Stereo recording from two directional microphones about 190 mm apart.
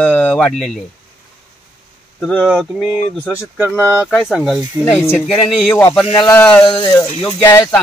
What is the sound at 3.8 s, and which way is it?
Speech, 10° right (ahead or behind).